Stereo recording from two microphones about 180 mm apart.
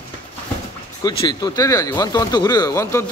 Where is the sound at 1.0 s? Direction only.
20° left (ahead or behind).